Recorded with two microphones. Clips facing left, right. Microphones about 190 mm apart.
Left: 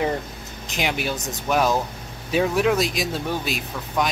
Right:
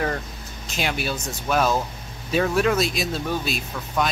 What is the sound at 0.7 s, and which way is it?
Speech, 15° left (ahead or behind).